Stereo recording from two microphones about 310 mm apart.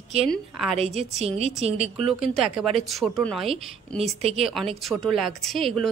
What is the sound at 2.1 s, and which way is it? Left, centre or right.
Speech, centre.